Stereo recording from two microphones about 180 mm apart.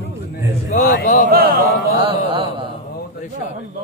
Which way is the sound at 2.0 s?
25° right (ahead or behind).